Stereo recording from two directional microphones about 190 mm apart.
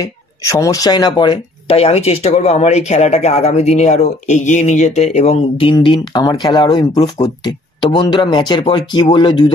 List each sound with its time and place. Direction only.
0.0 s speech: 15° left (ahead or behind)